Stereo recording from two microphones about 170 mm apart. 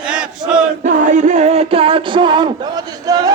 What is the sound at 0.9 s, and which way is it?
Music, 45° right (ahead or behind).